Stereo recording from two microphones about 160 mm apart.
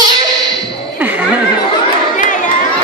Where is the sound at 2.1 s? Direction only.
55° left (ahead or behind).